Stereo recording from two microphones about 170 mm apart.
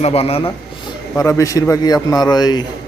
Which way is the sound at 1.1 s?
15° left (ahead or behind).